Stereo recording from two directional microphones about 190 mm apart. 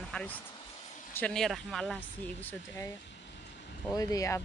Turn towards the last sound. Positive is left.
turn(degrees=20)  # may be behind; listen again after turning